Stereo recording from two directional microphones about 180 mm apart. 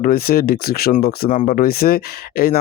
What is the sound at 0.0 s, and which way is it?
Speech, 55° left (ahead or behind).